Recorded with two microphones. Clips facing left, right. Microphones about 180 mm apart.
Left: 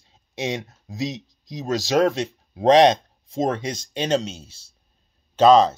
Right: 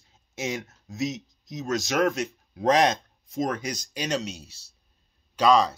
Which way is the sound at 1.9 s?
25° left (ahead or behind).